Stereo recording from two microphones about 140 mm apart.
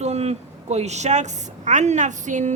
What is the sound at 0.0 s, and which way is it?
A woman's voice, 50° right (ahead or behind).